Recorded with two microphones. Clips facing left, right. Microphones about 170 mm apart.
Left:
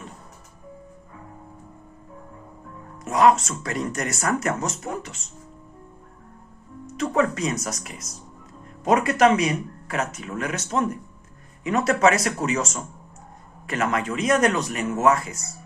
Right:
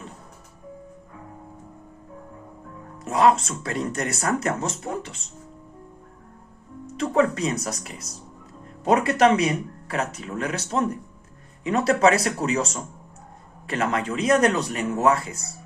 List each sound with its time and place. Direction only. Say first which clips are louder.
3.0 s speech: left 1 dB; 30° right (ahead or behind)
6.9 s speech: right 1 dB; 30° right (ahead or behind)